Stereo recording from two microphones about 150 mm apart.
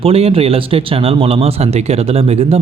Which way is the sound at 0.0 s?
40° right (ahead or behind).